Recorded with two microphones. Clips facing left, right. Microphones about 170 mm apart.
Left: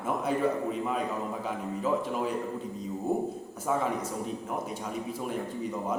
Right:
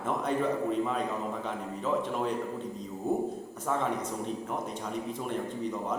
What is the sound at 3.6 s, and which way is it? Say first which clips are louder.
A man's voice: left 1 dB; 5° left (ahead or behind).